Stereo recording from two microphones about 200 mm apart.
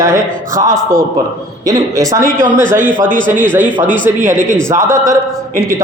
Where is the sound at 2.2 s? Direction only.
40° right (ahead or behind).